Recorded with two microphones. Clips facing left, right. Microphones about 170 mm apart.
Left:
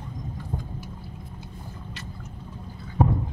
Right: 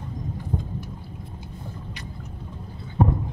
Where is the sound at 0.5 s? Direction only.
Centre (ahead or behind).